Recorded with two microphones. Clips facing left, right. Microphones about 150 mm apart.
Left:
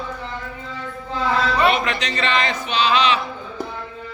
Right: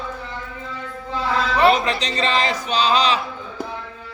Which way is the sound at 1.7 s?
35° right (ahead or behind).